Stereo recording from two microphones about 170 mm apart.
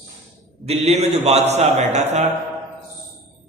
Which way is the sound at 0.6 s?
40° right (ahead or behind).